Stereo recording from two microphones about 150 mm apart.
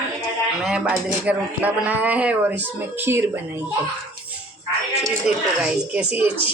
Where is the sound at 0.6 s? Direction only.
5° right (ahead or behind).